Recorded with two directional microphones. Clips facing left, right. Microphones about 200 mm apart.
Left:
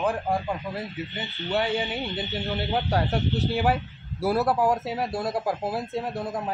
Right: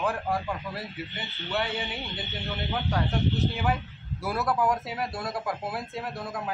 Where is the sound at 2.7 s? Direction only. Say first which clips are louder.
Left 3 dB; 40° left (ahead or behind).